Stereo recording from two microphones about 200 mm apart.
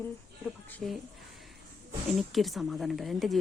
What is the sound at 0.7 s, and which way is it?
Speech, 5° left (ahead or behind).